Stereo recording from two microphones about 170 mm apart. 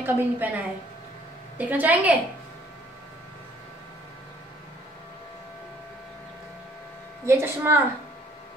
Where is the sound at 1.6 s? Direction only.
10° right (ahead or behind).